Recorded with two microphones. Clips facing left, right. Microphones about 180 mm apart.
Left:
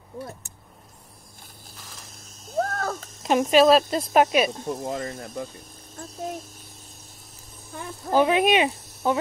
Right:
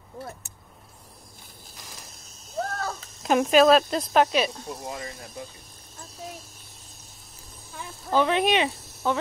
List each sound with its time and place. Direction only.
2.5 s a sound: 50° left (ahead or behind)
3.2 s speech: centre (ahead or behind)
4.6 s a child's voice: 50° left (ahead or behind)
8.1 s speech: 10° left (ahead or behind)